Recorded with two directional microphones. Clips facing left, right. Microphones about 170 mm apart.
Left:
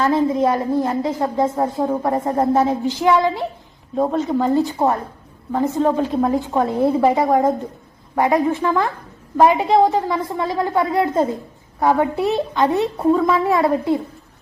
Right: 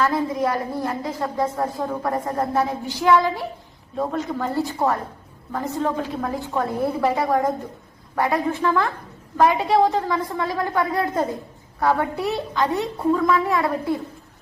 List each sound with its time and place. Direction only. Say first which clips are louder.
0.0 s a woman's voice: left 5 dB; 25° left (ahead or behind)